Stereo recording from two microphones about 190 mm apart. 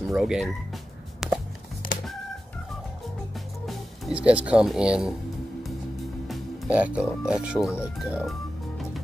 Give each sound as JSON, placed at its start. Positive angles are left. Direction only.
{"t": 0.1, "sound": "speech", "side_deg": 0}
{"t": 1.2, "sound": "music", "side_deg": 0}
{"t": 1.8, "sound": "a sound", "side_deg": 45}
{"t": 3.6, "sound": "speech", "side_deg": -5}
{"t": 6.2, "sound": "speech", "side_deg": -5}
{"t": 7.8, "sound": "music", "side_deg": 0}